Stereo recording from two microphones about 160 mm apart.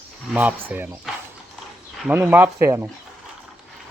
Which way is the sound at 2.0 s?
10° right (ahead or behind).